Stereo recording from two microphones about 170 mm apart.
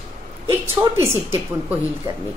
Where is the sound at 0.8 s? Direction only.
10° right (ahead or behind).